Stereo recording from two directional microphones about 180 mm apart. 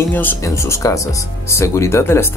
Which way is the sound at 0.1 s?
10° left (ahead or behind).